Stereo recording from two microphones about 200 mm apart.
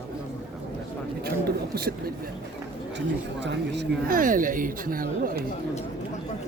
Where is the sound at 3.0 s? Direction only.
60° right (ahead or behind); by 5.4 s 45° right (ahead or behind).